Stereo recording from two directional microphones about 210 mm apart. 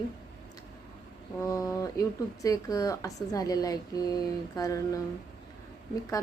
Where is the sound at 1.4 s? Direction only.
15° left (ahead or behind).